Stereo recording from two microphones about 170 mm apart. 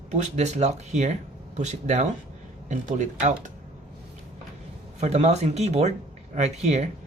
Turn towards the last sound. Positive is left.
turn(degrees=-40)  # may be behind; listen again after turning